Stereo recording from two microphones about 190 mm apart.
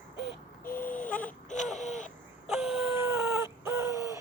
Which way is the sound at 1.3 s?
40° left (ahead or behind).